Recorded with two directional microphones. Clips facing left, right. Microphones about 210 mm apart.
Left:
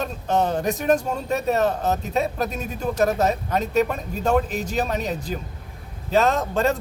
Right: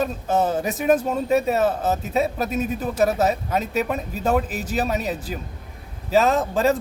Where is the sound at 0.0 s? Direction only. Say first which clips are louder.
Right 1 dB; 5° right (ahead or behind).